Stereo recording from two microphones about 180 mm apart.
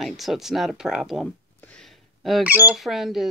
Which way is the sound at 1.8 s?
Centre (ahead or behind).